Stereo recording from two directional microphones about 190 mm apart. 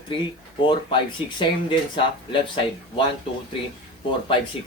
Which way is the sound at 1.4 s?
25° left (ahead or behind).